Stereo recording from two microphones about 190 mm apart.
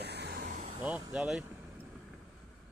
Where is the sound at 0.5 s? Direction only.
40° right (ahead or behind).